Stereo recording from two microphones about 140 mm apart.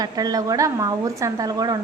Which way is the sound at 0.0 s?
25° right (ahead or behind).